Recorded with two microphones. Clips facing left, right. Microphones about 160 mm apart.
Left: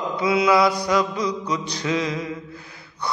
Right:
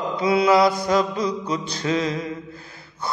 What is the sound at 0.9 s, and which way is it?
Mantra, 25° right (ahead or behind).